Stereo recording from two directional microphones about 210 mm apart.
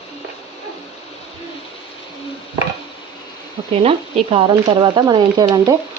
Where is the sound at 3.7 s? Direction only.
25° right (ahead or behind).